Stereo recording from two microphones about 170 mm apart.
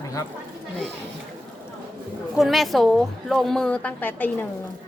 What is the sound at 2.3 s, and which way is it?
A woman's voice, centre (ahead or behind).